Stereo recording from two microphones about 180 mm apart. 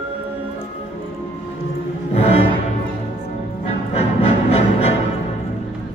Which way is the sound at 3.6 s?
35° left (ahead or behind).